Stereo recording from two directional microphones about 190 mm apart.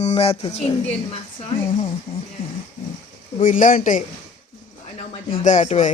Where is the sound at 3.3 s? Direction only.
40° left (ahead or behind).